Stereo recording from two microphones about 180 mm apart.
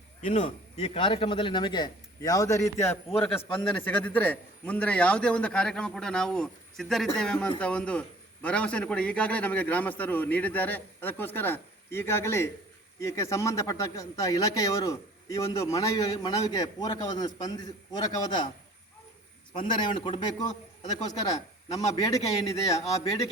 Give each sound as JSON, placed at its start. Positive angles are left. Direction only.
{"t": 0.2, "sound": "a man's voice", "side_deg": 40}
{"t": 19.5, "sound": "speech", "side_deg": 25}
{"t": 20.5, "sound": "a man's voice", "side_deg": 40}